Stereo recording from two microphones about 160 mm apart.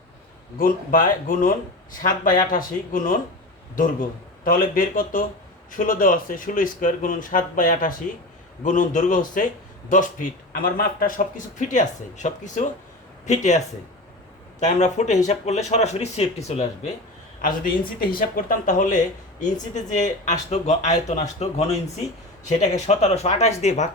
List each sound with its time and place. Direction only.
0.6 s speech: 55° left (ahead or behind)
4.4 s speech: 65° left (ahead or behind); by 13.6 s 45° left (ahead or behind)
14.6 s speech: 45° left (ahead or behind)
17.4 s speech: 60° left (ahead or behind); by 21.8 s 40° left (ahead or behind)
22.9 s speech: 45° left (ahead or behind)